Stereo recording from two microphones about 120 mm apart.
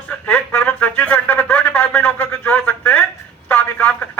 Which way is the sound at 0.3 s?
15° left (ahead or behind).